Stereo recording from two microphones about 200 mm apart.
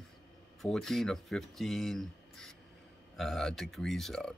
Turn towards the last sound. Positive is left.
turn(degrees=0)  # may be behind; listen again after turning